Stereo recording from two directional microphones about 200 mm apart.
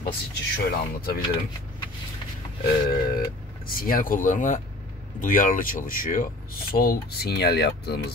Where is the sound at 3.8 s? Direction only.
45° left (ahead or behind).